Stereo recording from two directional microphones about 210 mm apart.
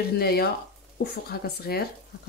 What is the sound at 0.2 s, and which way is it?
Speech, 50° left (ahead or behind).